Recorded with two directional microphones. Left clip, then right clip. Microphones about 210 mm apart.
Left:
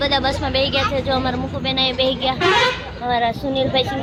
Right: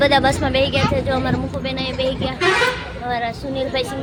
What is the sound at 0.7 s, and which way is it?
A woman's voice, centre (ahead or behind).